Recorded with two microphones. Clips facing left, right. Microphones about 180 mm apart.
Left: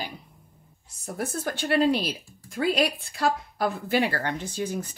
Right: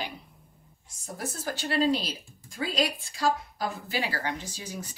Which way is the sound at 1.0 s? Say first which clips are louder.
Left 5 dB; 60° left (ahead or behind).